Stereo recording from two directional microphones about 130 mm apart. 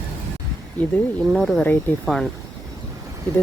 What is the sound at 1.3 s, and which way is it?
Speech, centre (ahead or behind).